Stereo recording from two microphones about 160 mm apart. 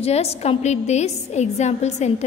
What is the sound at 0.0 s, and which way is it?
A woman's voice, 40° left (ahead or behind).